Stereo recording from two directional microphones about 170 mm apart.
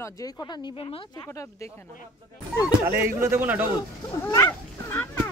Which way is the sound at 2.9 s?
15° right (ahead or behind).